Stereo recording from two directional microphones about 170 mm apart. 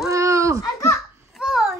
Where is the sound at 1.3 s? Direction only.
Centre (ahead or behind).